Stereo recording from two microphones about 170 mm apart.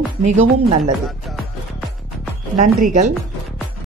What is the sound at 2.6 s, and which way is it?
Speech, 50° right (ahead or behind).